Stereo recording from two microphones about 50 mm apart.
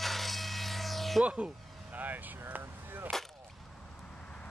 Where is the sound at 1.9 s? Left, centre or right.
Right.